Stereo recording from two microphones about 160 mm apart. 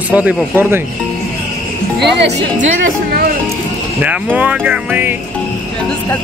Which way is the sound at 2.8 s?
65° right (ahead or behind).